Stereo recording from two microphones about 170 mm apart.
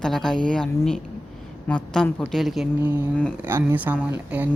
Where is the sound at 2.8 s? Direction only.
10° right (ahead or behind).